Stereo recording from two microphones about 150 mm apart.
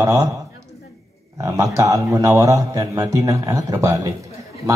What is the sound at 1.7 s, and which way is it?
A man's voice, 20° right (ahead or behind).